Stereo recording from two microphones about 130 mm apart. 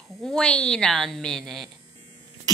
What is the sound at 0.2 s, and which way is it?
A woman's voice, 5° left (ahead or behind).